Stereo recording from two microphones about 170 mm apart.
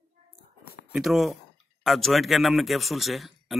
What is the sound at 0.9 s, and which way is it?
Speech, centre (ahead or behind).